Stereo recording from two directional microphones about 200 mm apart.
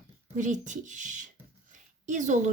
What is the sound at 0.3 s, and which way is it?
A woman's voice, 40° right (ahead or behind).